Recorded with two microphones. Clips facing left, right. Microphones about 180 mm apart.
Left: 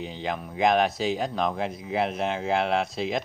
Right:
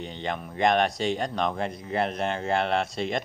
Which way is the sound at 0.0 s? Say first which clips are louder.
Left 1 dB; centre (ahead or behind).